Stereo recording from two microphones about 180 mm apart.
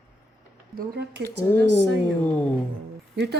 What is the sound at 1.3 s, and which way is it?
Speech, 10° left (ahead or behind).